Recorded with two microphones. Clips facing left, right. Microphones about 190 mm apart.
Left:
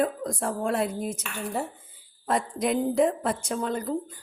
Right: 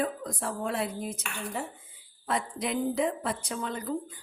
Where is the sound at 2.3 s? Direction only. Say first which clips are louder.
Left 5 dB; 45° left (ahead or behind).